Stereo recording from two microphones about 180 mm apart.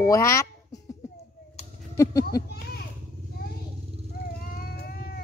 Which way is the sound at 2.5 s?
60° left (ahead or behind).